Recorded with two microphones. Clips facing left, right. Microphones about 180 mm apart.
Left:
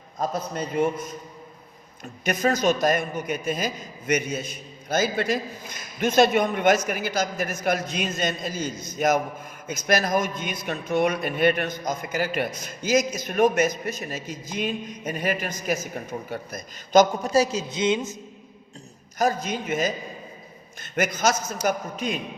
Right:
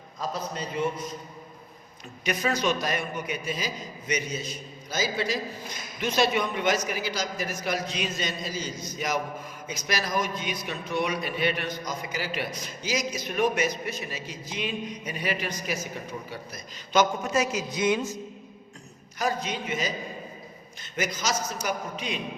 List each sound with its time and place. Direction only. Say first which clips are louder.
0.2 s a man's voice: left 4 dB; 50° left (ahead or behind)
2.2 s a man's voice: left 5 dB; 45° left (ahead or behind); by 18.1 s 20° left (ahead or behind)
19.2 s a man's voice: left 4 dB; 45° left (ahead or behind)
20.9 s a man's voice: left 6 dB; 55° left (ahead or behind)